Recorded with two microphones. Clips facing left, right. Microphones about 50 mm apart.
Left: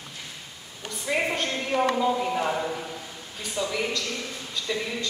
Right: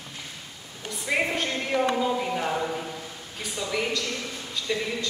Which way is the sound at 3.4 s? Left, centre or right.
Centre.